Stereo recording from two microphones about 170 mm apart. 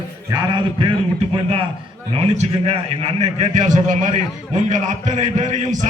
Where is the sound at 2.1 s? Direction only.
35° right (ahead or behind).